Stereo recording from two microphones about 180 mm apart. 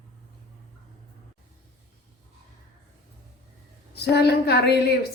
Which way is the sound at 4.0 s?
65° left (ahead or behind).